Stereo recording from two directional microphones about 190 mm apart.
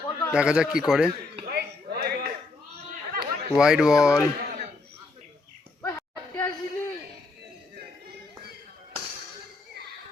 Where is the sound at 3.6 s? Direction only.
5° right (ahead or behind).